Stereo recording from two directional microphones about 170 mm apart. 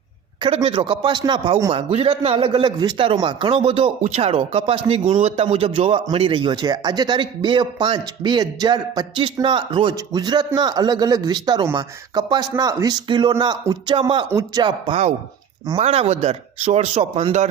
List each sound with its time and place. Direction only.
0.4 s a man's voice: 35° right (ahead or behind)
1.7 s a man's voice: 35° right (ahead or behind)
15.8 s speech: 40° right (ahead or behind)